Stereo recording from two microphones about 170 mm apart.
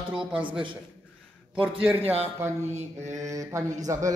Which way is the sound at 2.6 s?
40° right (ahead or behind).